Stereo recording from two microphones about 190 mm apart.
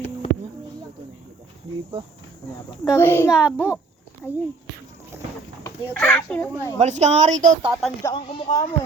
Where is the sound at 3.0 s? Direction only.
10° left (ahead or behind).